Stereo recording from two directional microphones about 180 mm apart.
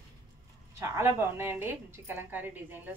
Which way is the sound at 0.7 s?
15° right (ahead or behind).